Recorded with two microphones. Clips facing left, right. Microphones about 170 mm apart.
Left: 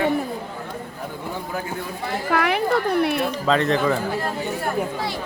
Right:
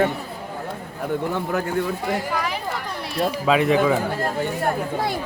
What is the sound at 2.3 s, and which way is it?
Speech, 65° left (ahead or behind).